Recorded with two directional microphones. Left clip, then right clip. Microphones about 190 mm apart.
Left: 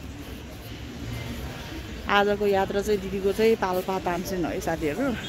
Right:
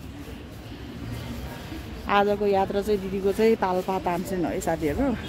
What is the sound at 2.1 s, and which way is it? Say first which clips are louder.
Speech: even; 5° right (ahead or behind).